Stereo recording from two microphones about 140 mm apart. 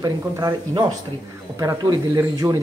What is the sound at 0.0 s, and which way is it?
Speech, 25° right (ahead or behind).